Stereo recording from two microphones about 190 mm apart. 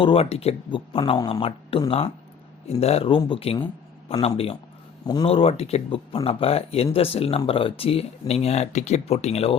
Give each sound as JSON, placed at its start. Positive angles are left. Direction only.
{"t": 0.0, "sound": "speech", "side_deg": 30}